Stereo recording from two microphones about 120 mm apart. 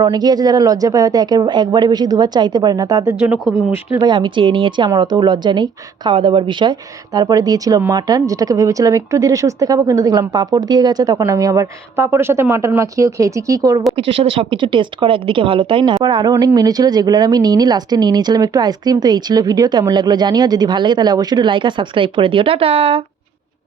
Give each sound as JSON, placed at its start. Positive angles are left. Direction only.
{"t": 0.0, "sound": "speech", "side_deg": -35}
{"t": 3.3, "sound": "speech", "side_deg": 5}
{"t": 3.9, "sound": "speech", "side_deg": -40}
{"t": 13.9, "sound": "speech", "side_deg": -50}